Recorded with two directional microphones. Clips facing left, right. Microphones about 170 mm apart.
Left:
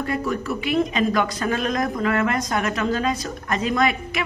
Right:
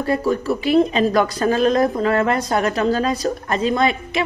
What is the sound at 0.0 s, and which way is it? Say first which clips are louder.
Speech: right 5 dB; 30° right (ahead or behind).